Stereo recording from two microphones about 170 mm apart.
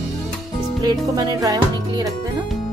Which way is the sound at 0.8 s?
20° right (ahead or behind).